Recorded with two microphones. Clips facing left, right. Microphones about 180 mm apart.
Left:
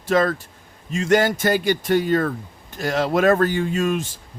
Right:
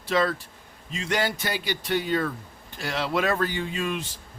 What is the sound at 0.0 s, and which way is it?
A man's voice, 45° left (ahead or behind).